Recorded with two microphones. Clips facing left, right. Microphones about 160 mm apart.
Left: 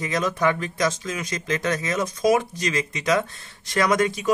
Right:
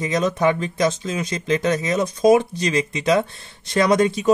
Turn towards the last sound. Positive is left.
turn(degrees=-25)  # may be behind; listen again after turning